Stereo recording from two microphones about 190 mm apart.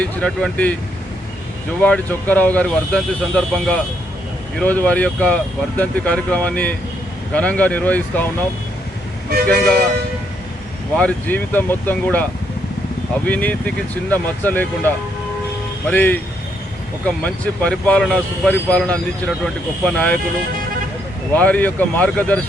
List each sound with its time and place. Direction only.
0.0 s speech: 5° left (ahead or behind)
1.8 s speech: 10° left (ahead or behind)
9.3 s speech: 55° right (ahead or behind)
10.9 s speech: 5° left (ahead or behind)
17.2 s speech: 5° left (ahead or behind)
21.3 s speech: 10° left (ahead or behind)